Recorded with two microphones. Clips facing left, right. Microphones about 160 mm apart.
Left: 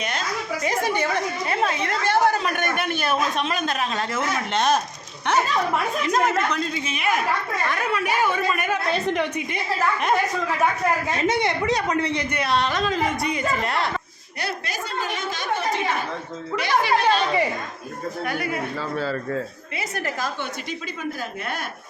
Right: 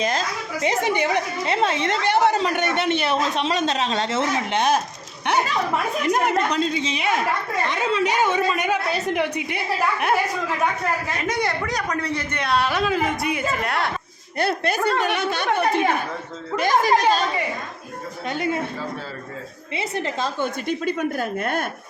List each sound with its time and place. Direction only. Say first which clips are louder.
0.0 s chuckle: right 4 dB; 30° right (ahead or behind)
0.7 s a woman's voice: right 3 dB; 20° right (ahead or behind)
4.5 s a woman's voice: even; 10° right (ahead or behind)
6.1 s a woman's voice: right 2 dB; 15° right (ahead or behind)
11.3 s a woman's voice: left 2 dB; 20° left (ahead or behind)
12.3 s a woman's voice: right 4 dB; 5° left (ahead or behind)
14.3 s a woman's voice: right 8 dB; 55° right (ahead or behind)
16.6 s a woman's voice: right 3 dB; 45° right (ahead or behind)
18.3 s a woman's voice: right 5 dB; 25° right (ahead or behind)
19.7 s a woman's voice: right 3 dB; 25° right (ahead or behind)
20.4 s a woman's voice: right 7 dB; 55° right (ahead or behind)